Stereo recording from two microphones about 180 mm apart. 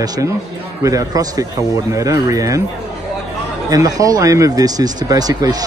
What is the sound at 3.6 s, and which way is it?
Speech, 20° right (ahead or behind).